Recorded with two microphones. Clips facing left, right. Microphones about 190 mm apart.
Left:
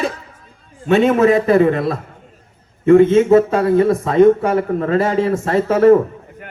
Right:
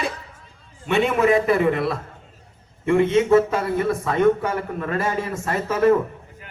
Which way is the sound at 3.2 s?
20° left (ahead or behind).